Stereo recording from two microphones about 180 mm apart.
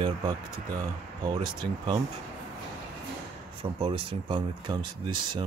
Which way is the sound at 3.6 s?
35° right (ahead or behind).